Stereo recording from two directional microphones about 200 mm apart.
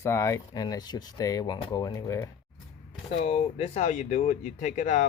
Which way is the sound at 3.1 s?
35° left (ahead or behind).